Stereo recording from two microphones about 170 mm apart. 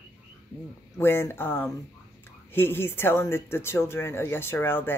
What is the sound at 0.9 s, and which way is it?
Speech, 15° left (ahead or behind).